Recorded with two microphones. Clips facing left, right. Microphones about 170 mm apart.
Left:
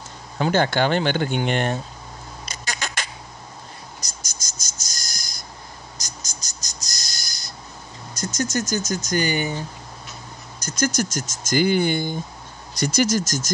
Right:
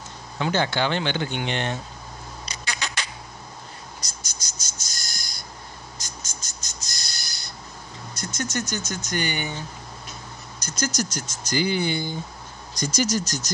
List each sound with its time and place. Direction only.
0.4 s speech: 50° left (ahead or behind)
2.4 s rodents: 45° left (ahead or behind)
4.2 s cricket: 45° left (ahead or behind)
5.9 s frog: 40° left (ahead or behind)
8.2 s speech: 40° left (ahead or behind)
10.6 s speech: 55° left (ahead or behind)
12.7 s speech: 65° left (ahead or behind)